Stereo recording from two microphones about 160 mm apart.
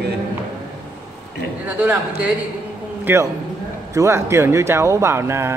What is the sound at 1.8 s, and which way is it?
A man's voice, 5° right (ahead or behind).